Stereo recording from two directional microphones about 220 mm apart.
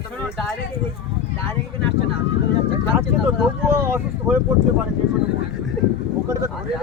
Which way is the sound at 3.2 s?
10° right (ahead or behind).